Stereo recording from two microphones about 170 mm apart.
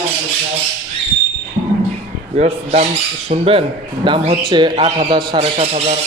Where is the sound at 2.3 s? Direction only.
40° right (ahead or behind).